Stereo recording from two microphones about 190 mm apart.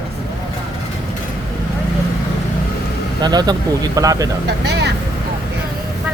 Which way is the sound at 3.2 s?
20° right (ahead or behind).